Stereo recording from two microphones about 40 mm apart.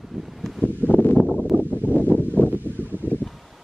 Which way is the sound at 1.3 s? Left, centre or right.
Right.